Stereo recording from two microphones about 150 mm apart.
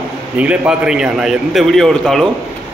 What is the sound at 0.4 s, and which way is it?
A man's voice, 5° right (ahead or behind).